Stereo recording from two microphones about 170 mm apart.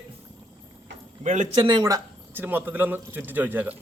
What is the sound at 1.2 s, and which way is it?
Speech, 45° right (ahead or behind).